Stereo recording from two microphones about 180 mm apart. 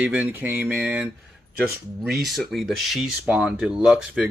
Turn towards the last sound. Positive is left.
turn(degrees=-5)  # may be behind; listen again after turning